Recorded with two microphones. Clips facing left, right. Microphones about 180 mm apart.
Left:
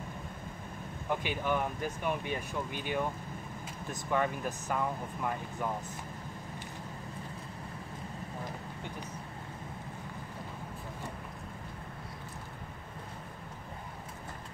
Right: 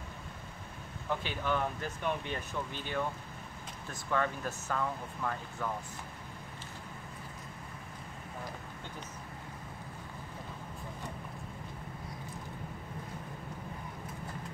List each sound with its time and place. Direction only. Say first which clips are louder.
1.0 s speech: left 2 dB; 15° left (ahead or behind)
4.1 s speech: left 1 dB; 15° left (ahead or behind)